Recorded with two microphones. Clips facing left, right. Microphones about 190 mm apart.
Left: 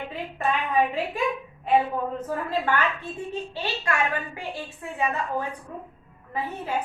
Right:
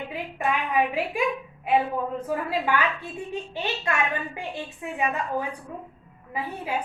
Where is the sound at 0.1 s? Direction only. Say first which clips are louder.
Even; 10° right (ahead or behind).